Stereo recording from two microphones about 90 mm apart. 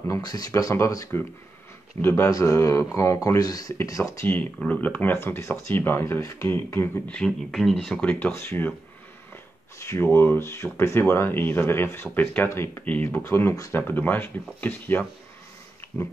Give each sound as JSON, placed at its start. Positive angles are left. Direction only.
{"t": 0.1, "sound": "speech", "side_deg": 45}
{"t": 4.6, "sound": "speech", "side_deg": 15}
{"t": 7.1, "sound": "speech", "side_deg": 5}
{"t": 8.3, "sound": "speech", "side_deg": 25}
{"t": 9.8, "sound": "speech", "side_deg": 30}
{"t": 12.8, "sound": "speech", "side_deg": 20}